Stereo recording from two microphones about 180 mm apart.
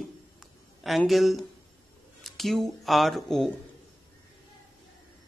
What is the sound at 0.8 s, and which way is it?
Speech, centre (ahead or behind).